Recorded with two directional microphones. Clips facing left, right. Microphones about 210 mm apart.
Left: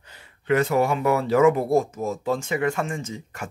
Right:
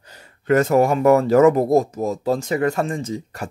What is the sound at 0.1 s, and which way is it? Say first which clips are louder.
Speech: right 4 dB; 40° right (ahead or behind).